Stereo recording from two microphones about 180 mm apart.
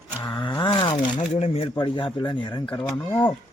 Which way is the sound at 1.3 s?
35° left (ahead or behind).